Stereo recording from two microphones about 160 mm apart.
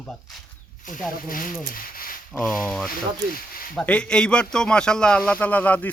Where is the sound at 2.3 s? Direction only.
5° left (ahead or behind).